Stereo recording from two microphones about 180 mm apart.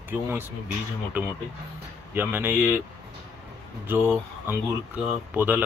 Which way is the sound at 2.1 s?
10° right (ahead or behind).